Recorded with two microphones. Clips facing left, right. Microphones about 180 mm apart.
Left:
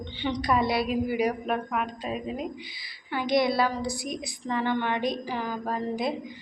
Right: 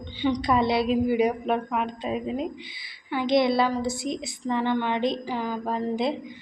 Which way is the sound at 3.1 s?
20° right (ahead or behind).